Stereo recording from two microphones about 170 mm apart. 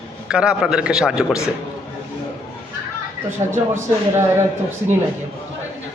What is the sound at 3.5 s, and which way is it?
Speech, 15° right (ahead or behind).